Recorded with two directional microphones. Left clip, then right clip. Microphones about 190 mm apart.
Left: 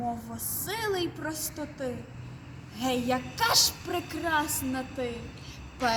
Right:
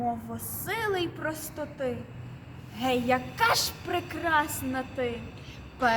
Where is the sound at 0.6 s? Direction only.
10° right (ahead or behind).